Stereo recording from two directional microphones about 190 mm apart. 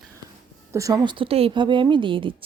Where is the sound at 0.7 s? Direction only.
15° right (ahead or behind).